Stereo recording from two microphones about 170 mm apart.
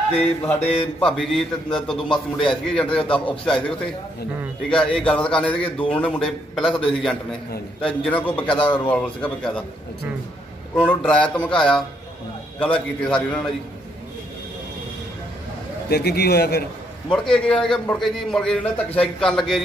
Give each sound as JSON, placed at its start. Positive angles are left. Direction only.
{"t": 0.2, "sound": "a man's voice", "side_deg": 10}
{"t": 8.5, "sound": "a man's voice", "side_deg": 30}
{"t": 8.8, "sound": "speech", "side_deg": 5}
{"t": 10.8, "sound": "a man's voice", "side_deg": 5}
{"t": 15.9, "sound": "a man's voice", "side_deg": 70}
{"t": 17.1, "sound": "a man's voice", "side_deg": 5}